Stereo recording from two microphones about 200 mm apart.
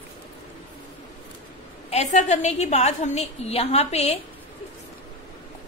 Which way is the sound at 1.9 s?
35° left (ahead or behind).